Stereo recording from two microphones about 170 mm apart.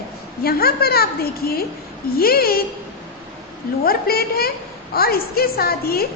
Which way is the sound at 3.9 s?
65° left (ahead or behind).